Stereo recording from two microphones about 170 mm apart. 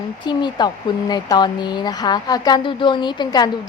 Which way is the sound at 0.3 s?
25° left (ahead or behind).